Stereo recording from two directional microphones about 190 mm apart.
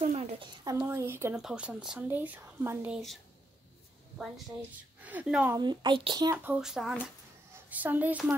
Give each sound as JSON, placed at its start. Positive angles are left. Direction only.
{"t": 0.0, "sound": "a sound", "side_deg": -35}
{"t": 0.7, "sound": "speech", "side_deg": -15}
{"t": 4.6, "sound": "speech", "side_deg": -10}
{"t": 5.6, "sound": "speech", "side_deg": -25}
{"t": 6.4, "sound": "speech", "side_deg": -5}